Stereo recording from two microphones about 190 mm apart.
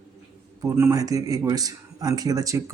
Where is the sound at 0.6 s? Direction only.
15° right (ahead or behind).